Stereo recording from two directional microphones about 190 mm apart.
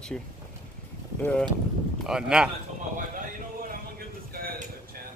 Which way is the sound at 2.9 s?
45° right (ahead or behind).